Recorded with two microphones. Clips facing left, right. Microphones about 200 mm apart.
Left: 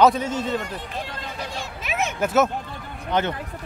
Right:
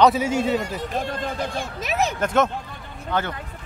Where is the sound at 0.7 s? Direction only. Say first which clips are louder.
Right 6 dB; 50° right (ahead or behind).